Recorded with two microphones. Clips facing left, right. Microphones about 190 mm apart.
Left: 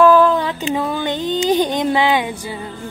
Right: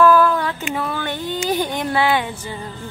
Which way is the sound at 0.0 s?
20° left (ahead or behind).